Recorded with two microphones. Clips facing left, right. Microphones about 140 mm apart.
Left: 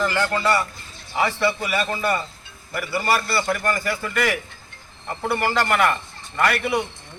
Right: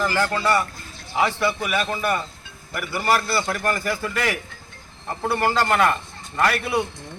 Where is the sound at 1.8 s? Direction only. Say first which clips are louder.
Even; centre (ahead or behind).